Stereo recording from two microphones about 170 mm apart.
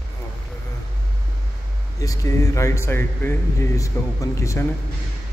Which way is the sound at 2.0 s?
20° left (ahead or behind).